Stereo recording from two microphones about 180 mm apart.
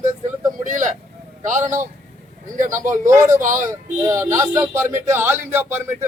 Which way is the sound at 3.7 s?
15° right (ahead or behind).